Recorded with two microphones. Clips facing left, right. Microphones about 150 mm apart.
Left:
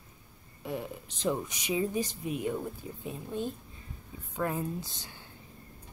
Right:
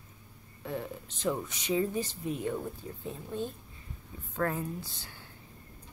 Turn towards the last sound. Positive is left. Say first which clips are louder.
# left 2 dB
turn(degrees=20)  # may be behind; listen again after turning